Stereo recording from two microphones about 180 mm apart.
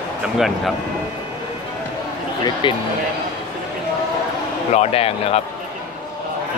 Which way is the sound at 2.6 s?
25° left (ahead or behind).